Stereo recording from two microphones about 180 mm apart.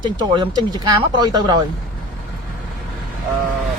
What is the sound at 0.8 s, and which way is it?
Speech, 25° right (ahead or behind).